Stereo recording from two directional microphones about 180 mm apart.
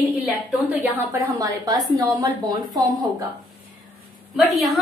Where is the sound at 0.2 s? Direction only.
10° right (ahead or behind).